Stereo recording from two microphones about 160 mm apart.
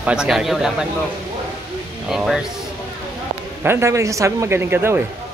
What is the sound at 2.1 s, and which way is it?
Speech, 5° right (ahead or behind).